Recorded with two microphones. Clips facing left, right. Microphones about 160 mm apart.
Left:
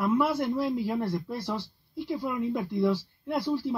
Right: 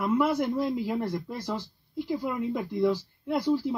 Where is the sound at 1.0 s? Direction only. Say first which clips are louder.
Left 1 dB; 15° right (ahead or behind).